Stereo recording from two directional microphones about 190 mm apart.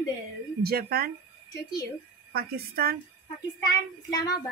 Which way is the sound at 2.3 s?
55° right (ahead or behind).